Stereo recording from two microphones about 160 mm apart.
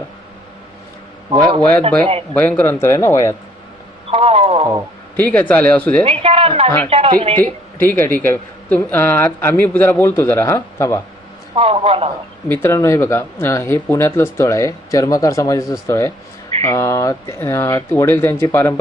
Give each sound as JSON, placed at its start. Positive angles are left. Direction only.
{"t": 1.3, "sound": "a man's voice", "side_deg": -30}
{"t": 2.3, "sound": "speech", "side_deg": 10}
{"t": 4.1, "sound": "speech", "side_deg": -40}
{"t": 5.1, "sound": "speech", "side_deg": 10}
{"t": 6.1, "sound": "a woman's voice", "side_deg": -35}
{"t": 6.7, "sound": "speech", "side_deg": 10}
{"t": 6.9, "sound": "a woman's voice", "side_deg": -35}
{"t": 7.3, "sound": "speech", "side_deg": 10}
{"t": 11.5, "sound": "a woman's voice", "side_deg": -35}
{"t": 12.5, "sound": "speech", "side_deg": 15}